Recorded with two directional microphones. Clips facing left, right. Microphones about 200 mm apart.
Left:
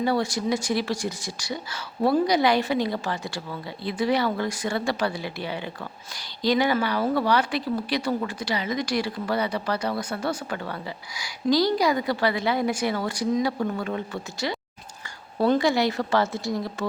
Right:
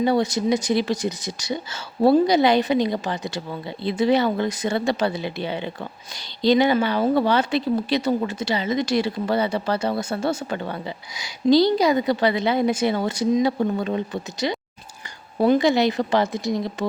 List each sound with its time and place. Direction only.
0.0 s speech: 20° right (ahead or behind)